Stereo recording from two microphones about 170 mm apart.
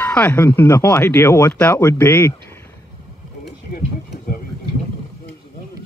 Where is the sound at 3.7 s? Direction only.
60° left (ahead or behind).